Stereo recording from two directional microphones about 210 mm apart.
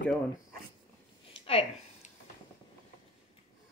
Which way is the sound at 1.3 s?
25° left (ahead or behind).